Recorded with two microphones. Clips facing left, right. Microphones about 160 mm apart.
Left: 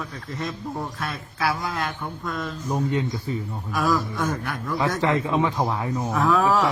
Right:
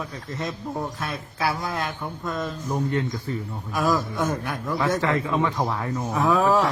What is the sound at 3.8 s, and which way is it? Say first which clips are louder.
Speech: even; 20° right (ahead or behind).